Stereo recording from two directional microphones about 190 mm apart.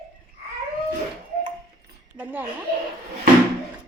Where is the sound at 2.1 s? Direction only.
10° right (ahead or behind).